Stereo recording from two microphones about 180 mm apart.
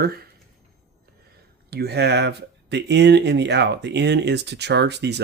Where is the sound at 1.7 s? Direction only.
65° right (ahead or behind).